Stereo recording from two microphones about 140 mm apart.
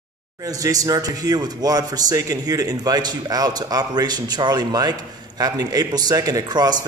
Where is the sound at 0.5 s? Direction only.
25° right (ahead or behind).